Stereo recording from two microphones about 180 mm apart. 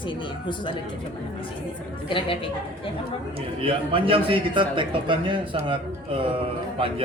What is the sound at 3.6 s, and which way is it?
A man's voice, 30° right (ahead or behind).